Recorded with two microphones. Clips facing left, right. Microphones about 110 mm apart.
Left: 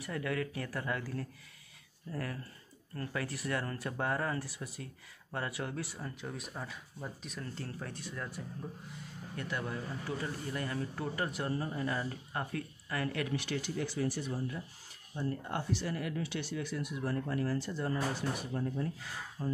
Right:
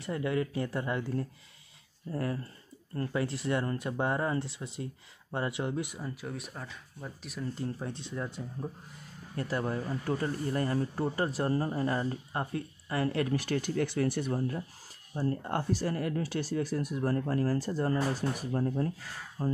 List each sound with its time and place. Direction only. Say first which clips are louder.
0.0 s speech: right 5 dB; 25° right (ahead or behind)
6.0 s speech: right 3 dB; centre (ahead or behind)
7.5 s speech: right 6 dB; 20° right (ahead or behind)
9.4 s speech: right 6 dB; 35° right (ahead or behind)